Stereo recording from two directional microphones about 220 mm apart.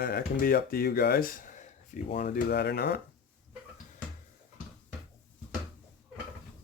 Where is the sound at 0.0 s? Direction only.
40° left (ahead or behind).